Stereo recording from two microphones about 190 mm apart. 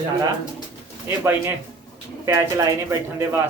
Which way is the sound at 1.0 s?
10° right (ahead or behind).